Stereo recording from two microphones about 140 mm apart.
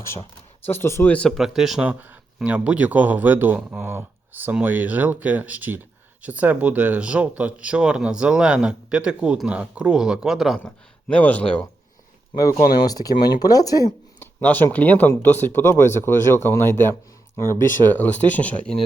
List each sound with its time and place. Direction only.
0.7 s speech: 20° left (ahead or behind)
1.1 s speech: 5° left (ahead or behind)
11.1 s speech: 10° left (ahead or behind)
12.3 s speech: 25° left (ahead or behind)
14.2 s speech: 10° left (ahead or behind)